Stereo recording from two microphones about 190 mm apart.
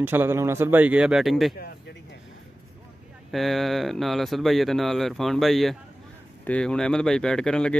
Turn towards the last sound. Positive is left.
turn(degrees=5)  # may be behind; listen again after turning